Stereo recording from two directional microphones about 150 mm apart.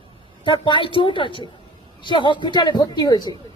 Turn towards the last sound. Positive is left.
turn(degrees=25)  # may be behind; listen again after turning